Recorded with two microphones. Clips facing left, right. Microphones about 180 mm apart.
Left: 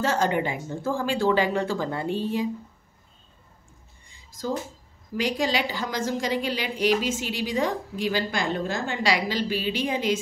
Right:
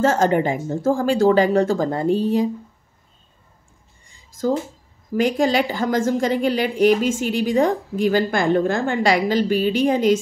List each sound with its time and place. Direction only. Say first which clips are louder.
0.0 s speech: right 7 dB; 45° right (ahead or behind)
4.1 s a sound: right 8 dB; 50° right (ahead or behind)
5.1 s a woman's voice: right 7 dB; 50° right (ahead or behind)